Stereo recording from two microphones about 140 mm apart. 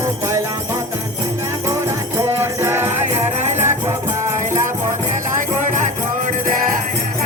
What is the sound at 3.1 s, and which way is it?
Music, 55° right (ahead or behind).